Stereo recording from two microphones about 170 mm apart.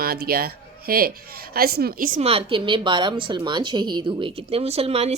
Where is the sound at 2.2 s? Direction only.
35° right (ahead or behind).